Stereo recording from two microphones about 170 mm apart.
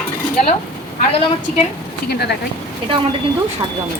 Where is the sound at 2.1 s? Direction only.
75° left (ahead or behind).